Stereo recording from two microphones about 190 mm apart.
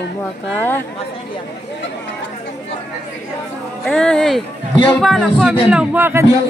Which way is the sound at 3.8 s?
5° left (ahead or behind).